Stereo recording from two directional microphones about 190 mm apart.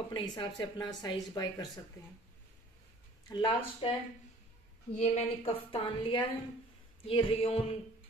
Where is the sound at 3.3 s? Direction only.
20° left (ahead or behind).